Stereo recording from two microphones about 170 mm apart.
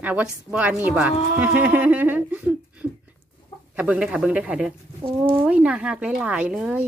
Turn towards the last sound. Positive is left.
turn(degrees=-5)  # may be behind; listen again after turning